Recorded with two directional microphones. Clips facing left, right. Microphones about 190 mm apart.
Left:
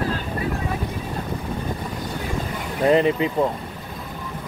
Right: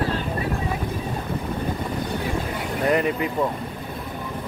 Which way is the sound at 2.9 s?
25° left (ahead or behind).